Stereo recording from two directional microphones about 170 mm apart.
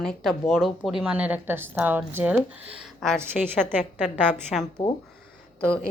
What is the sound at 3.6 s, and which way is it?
Speech, 5° left (ahead or behind).